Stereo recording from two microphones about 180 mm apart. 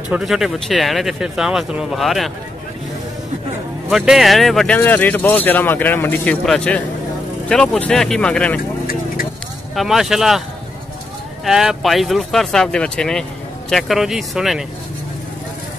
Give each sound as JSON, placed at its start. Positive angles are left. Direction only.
{"t": 0.1, "sound": "speech", "side_deg": 0}
{"t": 3.9, "sound": "speech", "side_deg": 0}
{"t": 8.8, "sound": "vehicle", "side_deg": 55}
{"t": 9.8, "sound": "speech", "side_deg": 0}
{"t": 11.4, "sound": "speech", "side_deg": 0}